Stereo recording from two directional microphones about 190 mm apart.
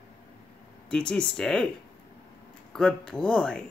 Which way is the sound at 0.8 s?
5° left (ahead or behind).